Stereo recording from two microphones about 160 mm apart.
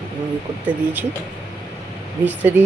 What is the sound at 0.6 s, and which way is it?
Speech, 10° right (ahead or behind).